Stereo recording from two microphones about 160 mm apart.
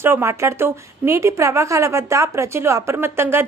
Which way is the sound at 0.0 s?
15° right (ahead or behind).